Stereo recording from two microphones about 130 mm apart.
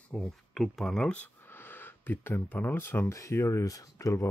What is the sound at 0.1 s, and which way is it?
Speech, centre (ahead or behind).